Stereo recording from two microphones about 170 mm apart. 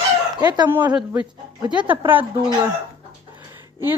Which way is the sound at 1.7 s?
10° right (ahead or behind).